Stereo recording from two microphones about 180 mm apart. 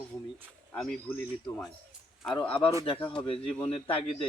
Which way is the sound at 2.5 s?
30° left (ahead or behind).